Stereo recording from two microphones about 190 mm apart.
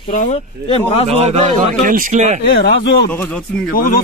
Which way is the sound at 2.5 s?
60° left (ahead or behind).